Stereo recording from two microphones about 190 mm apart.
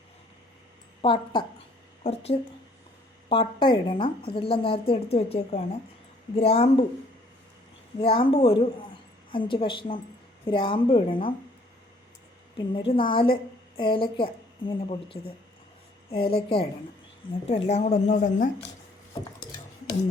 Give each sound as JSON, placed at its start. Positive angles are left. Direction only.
{"t": 1.0, "sound": "a woman's voice", "side_deg": 25}
{"t": 7.9, "sound": "a woman's voice", "side_deg": 30}
{"t": 12.5, "sound": "a woman's voice", "side_deg": 25}